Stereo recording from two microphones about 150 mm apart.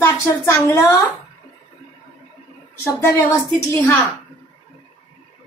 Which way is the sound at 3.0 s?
20° left (ahead or behind).